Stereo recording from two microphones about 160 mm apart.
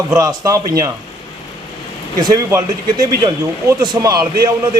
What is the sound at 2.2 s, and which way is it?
A man's voice, 25° right (ahead or behind).